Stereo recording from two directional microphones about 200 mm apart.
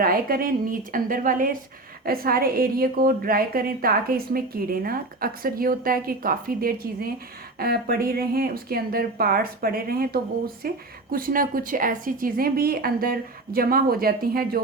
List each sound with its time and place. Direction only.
0.0 s a woman's voice: 45° right (ahead or behind)